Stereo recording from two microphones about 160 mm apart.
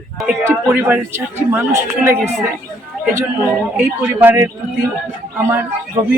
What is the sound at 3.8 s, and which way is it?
Speech, 15° right (ahead or behind).